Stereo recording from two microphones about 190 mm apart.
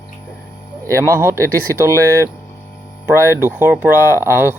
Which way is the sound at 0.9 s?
15° right (ahead or behind).